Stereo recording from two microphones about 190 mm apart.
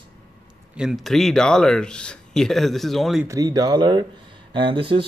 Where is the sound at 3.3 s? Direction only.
20° right (ahead or behind).